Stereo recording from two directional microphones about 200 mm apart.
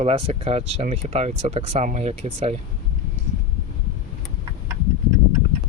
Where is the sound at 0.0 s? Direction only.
30° right (ahead or behind).